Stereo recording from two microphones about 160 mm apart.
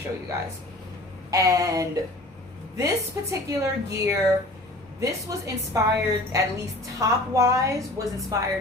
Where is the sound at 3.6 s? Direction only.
20° right (ahead or behind).